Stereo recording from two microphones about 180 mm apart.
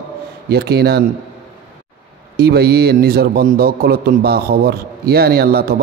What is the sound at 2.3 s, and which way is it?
A man's voice, 60° right (ahead or behind).